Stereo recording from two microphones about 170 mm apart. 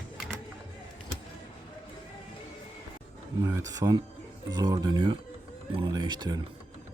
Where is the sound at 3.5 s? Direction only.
20° right (ahead or behind).